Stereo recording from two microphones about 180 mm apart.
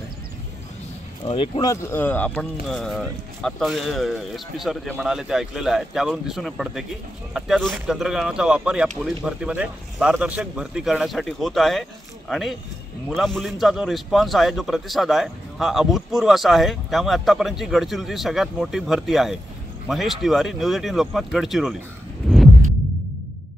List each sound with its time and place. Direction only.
1.2 s speech: 30° left (ahead or behind)
1.7 s a man's voice: 15° left (ahead or behind); by 21.7 s centre (ahead or behind)
22.2 s a sound: centre (ahead or behind)